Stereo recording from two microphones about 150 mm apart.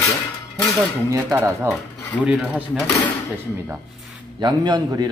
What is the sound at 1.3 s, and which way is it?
Speech, 15° right (ahead or behind).